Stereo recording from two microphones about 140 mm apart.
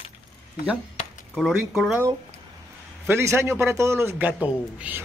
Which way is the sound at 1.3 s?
Centre (ahead or behind).